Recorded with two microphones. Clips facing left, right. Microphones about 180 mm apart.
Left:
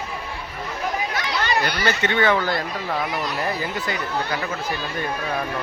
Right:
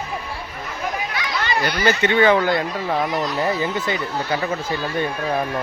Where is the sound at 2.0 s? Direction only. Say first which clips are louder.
Right 4 dB; 15° right (ahead or behind).